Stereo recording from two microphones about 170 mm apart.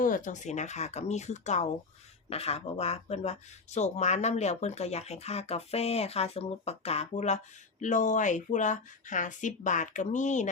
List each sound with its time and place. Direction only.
0.0 s speech: 50° left (ahead or behind)